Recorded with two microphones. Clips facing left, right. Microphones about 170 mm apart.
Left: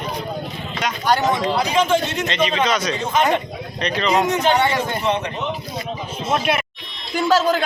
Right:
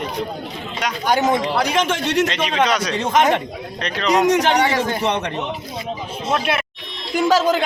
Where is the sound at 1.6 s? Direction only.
70° right (ahead or behind).